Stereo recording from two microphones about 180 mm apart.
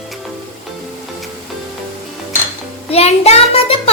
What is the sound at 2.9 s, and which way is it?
Child singing, 35° left (ahead or behind).